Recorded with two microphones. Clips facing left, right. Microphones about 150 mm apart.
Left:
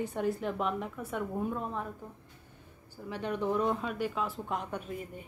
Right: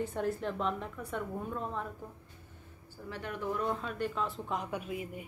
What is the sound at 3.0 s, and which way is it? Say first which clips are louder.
Speech: left 5 dB; 20° left (ahead or behind).